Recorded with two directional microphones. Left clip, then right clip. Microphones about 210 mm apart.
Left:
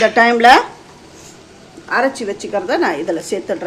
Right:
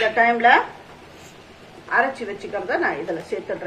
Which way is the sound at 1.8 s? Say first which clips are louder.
Left 4 dB; 45° left (ahead or behind).